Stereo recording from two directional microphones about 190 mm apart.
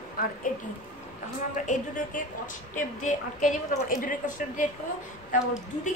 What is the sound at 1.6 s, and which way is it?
A woman's voice, 40° left (ahead or behind).